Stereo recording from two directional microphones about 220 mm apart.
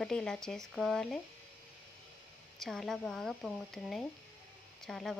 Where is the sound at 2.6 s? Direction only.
Centre (ahead or behind).